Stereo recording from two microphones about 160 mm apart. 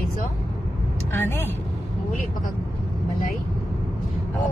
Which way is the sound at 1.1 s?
15° left (ahead or behind).